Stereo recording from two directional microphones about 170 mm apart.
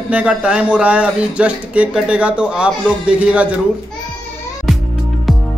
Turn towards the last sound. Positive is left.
turn(degrees=0)  # may be behind; listen again after turning